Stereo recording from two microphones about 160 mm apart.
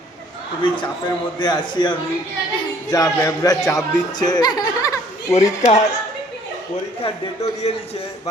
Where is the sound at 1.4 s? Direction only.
30° left (ahead or behind).